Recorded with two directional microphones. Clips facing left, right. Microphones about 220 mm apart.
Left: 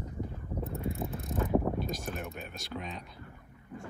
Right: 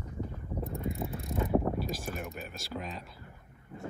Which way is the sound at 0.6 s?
Centre (ahead or behind).